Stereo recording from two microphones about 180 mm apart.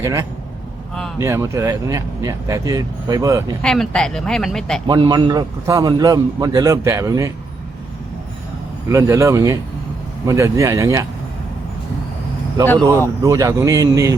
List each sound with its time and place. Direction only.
0.0 s speech: 15° right (ahead or behind)
3.6 s speech: 5° left (ahead or behind)
4.9 s a man's voice: 20° right (ahead or behind)
8.9 s speech: 15° right (ahead or behind)
12.6 s speech: 10° left (ahead or behind)
13.2 s speech: 20° right (ahead or behind)